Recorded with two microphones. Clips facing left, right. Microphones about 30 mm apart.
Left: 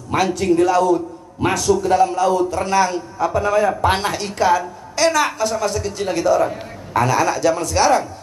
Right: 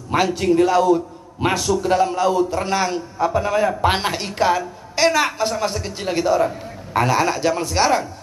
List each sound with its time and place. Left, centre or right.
0.1 s a man's voice: centre